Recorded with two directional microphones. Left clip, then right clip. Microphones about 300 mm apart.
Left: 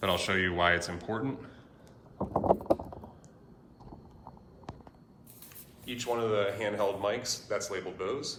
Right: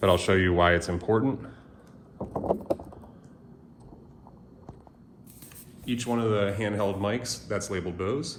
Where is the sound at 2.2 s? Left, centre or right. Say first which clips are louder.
Left 2 dB; centre.